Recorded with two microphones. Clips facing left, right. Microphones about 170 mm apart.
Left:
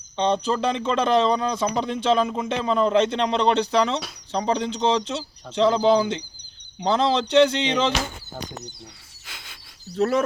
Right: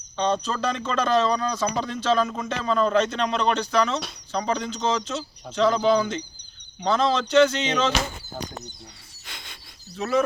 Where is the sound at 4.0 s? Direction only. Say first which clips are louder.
Even; centre (ahead or behind).